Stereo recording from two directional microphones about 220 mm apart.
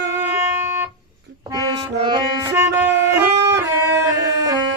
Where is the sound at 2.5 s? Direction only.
10° right (ahead or behind).